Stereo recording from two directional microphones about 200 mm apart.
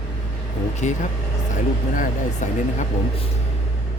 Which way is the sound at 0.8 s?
35° left (ahead or behind).